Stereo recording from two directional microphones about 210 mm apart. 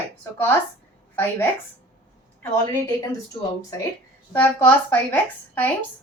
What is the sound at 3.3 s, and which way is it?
Speech, 20° left (ahead or behind).